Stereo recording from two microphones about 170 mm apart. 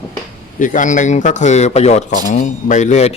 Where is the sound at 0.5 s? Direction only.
50° left (ahead or behind).